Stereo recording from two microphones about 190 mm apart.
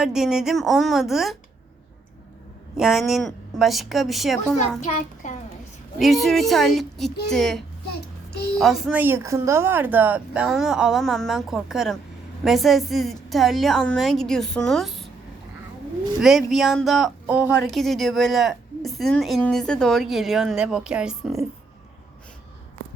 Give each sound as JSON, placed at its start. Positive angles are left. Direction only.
{"t": 0.0, "sound": "a woman's voice", "side_deg": -5}
{"t": 2.7, "sound": "a woman's voice", "side_deg": 0}
{"t": 4.9, "sound": "a child's voice", "side_deg": 40}
{"t": 6.0, "sound": "a woman's voice", "side_deg": 0}
{"t": 16.2, "sound": "a woman's voice", "side_deg": 0}
{"t": 17.7, "sound": "a woman's voice", "side_deg": 0}